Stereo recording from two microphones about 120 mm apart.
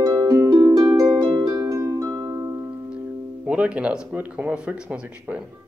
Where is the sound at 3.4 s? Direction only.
10° right (ahead or behind).